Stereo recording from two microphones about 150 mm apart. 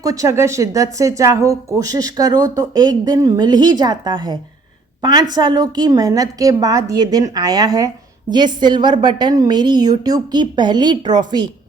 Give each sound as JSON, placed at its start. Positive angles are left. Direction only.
{"t": 0.0, "sound": "speech", "side_deg": -20}